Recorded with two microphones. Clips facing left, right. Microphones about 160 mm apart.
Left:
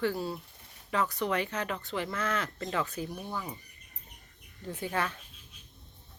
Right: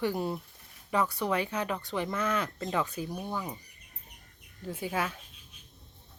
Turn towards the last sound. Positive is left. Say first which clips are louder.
# even
turn(degrees=-10)  # may be behind; listen again after turning